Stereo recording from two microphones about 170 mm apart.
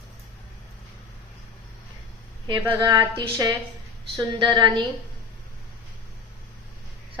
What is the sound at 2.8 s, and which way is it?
Speech, 15° right (ahead or behind).